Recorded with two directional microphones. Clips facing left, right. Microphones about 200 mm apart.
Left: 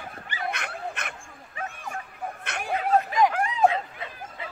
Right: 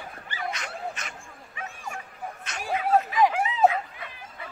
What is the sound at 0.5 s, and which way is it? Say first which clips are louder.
Dog: left 1 dB; 60° left (ahead or behind).